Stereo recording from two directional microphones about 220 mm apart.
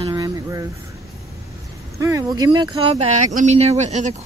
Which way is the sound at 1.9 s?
15° right (ahead or behind).